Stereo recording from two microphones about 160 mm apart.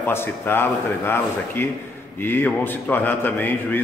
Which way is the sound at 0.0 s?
15° left (ahead or behind).